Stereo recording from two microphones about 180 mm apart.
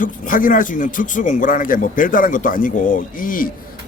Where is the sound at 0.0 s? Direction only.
50° left (ahead or behind).